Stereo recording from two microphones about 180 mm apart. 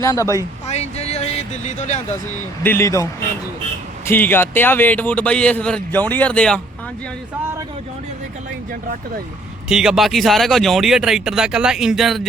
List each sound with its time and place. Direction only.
0.0 s a man's voice: 15° left (ahead or behind)
0.7 s a sound: 35° left (ahead or behind)
2.6 s a man's voice: 15° left (ahead or behind)
9.6 s speech: 5° right (ahead or behind)